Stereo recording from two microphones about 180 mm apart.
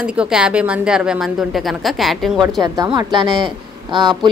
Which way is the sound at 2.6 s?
25° right (ahead or behind).